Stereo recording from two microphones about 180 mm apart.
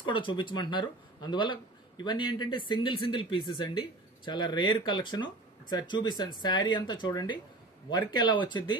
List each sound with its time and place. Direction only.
0.0 s speech: 25° left (ahead or behind)